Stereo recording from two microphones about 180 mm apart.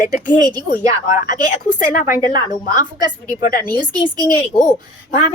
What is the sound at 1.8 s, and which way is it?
A woman's voice, 45° left (ahead or behind).